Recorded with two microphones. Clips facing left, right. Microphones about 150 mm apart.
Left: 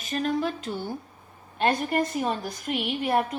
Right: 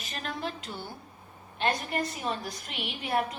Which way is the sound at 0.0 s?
45° left (ahead or behind).